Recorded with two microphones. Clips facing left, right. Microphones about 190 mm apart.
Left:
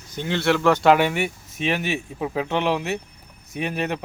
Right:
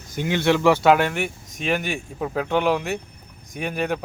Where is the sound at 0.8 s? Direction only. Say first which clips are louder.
Even; centre (ahead or behind).